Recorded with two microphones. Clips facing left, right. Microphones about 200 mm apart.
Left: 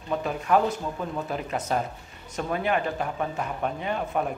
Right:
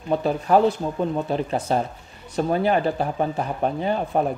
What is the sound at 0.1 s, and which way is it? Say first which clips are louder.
Speech: right 5 dB; 35° right (ahead or behind).